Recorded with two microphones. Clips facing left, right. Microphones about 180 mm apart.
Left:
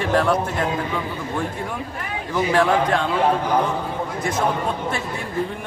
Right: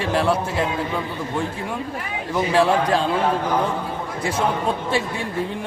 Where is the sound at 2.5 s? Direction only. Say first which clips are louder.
Right 1 dB; 35° right (ahead or behind).